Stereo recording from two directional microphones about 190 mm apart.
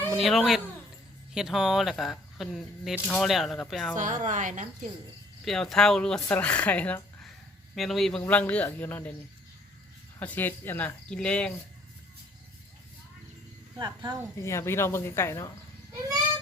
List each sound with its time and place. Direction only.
0.2 s speech: centre (ahead or behind)
3.9 s a woman's voice: 40° right (ahead or behind)
5.5 s speech: centre (ahead or behind)
10.2 s speech: 10° left (ahead or behind)
13.7 s speech: 20° right (ahead or behind)
14.3 s speech: 15° left (ahead or behind)